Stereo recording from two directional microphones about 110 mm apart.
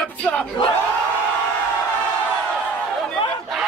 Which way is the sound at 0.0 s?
10° left (ahead or behind).